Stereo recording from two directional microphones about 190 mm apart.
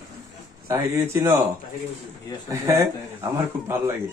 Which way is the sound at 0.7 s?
15° right (ahead or behind).